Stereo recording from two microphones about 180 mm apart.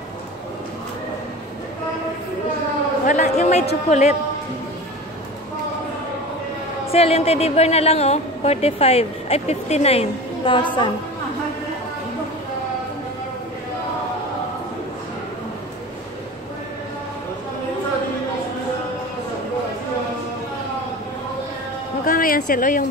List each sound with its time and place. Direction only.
3.1 s a woman's voice: 40° left (ahead or behind)
6.9 s a woman's voice: 35° left (ahead or behind)
22.0 s a sound: 50° left (ahead or behind)